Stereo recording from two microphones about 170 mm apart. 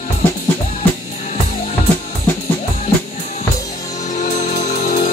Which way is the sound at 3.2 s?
40° left (ahead or behind).